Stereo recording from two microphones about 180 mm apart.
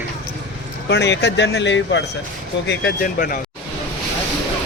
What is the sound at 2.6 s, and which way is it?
Speech, 70° left (ahead or behind).